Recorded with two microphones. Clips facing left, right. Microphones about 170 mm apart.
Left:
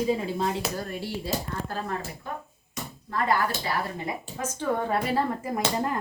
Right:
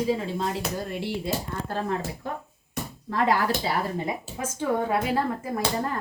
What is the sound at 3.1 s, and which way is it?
Speech, 90° right.